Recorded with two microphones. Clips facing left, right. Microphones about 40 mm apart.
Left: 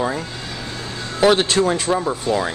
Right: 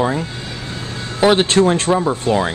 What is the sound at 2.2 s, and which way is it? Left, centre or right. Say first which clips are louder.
Speech: right 3 dB; right.